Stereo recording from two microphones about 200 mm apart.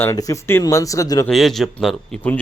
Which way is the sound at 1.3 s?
Centre (ahead or behind).